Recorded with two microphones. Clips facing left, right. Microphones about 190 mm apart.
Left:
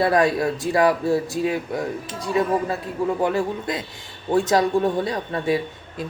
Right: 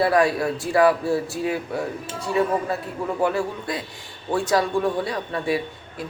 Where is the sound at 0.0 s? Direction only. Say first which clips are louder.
Left 1 dB; 20° left (ahead or behind).